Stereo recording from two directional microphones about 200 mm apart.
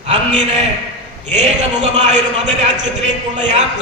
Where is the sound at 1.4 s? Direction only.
35° right (ahead or behind).